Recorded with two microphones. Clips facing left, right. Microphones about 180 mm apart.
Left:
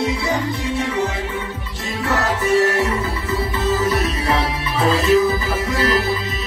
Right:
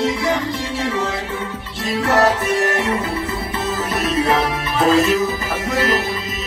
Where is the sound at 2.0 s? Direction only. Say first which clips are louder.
Right 6 dB; 80° right.